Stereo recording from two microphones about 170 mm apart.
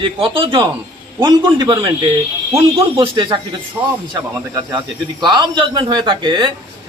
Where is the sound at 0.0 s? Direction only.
30° right (ahead or behind).